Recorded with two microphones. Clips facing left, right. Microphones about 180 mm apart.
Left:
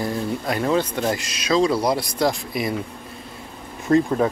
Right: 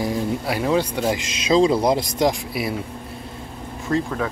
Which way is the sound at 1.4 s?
25° right (ahead or behind).